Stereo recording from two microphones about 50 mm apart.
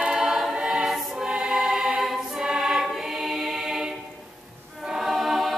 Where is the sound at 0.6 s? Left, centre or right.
Centre.